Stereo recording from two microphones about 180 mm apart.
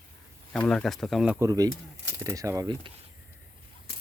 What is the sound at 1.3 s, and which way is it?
Speech, 20° right (ahead or behind).